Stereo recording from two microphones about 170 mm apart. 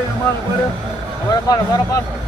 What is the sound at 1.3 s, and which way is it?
Speech, 20° left (ahead or behind).